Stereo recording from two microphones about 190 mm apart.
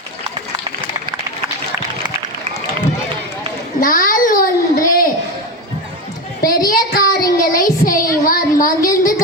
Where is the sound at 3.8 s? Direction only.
45° left (ahead or behind).